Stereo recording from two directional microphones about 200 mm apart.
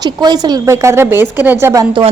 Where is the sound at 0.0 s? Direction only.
20° right (ahead or behind).